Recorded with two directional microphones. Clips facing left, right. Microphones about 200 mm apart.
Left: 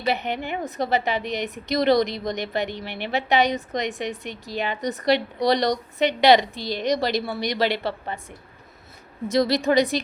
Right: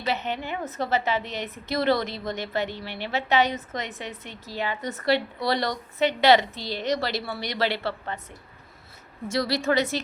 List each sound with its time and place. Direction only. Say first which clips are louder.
0.0 s a woman's voice: left 3 dB; 15° left (ahead or behind)
9.2 s a woman's voice: left 5 dB; 20° left (ahead or behind)